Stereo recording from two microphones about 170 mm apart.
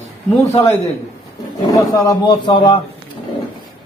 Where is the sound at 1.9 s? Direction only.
25° left (ahead or behind).